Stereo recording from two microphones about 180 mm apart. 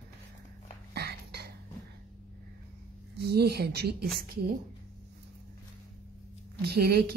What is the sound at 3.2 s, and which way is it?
Speech, 65° right (ahead or behind).